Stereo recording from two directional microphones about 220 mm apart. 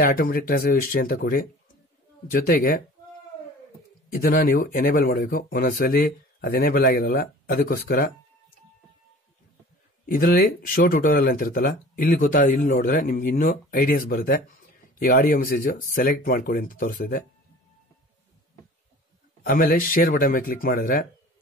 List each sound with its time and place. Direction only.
0.0 s speech: 45° left (ahead or behind)
4.1 s speech: 40° left (ahead or behind)
10.0 s speech: 40° left (ahead or behind)
19.4 s speech: 40° left (ahead or behind)